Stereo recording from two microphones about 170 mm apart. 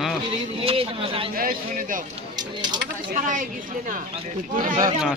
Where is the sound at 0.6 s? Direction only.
35° right (ahead or behind).